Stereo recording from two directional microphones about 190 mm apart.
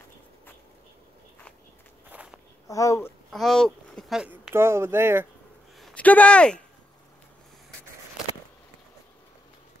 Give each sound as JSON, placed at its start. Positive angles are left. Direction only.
{"t": 2.0, "sound": "walk", "side_deg": -5}
{"t": 2.7, "sound": "speech", "side_deg": 15}
{"t": 3.3, "sound": "speech", "side_deg": 0}
{"t": 5.8, "sound": "speech", "side_deg": 5}